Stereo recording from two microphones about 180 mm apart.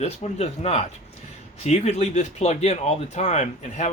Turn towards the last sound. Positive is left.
turn(degrees=40)  # may be behind; listen again after turning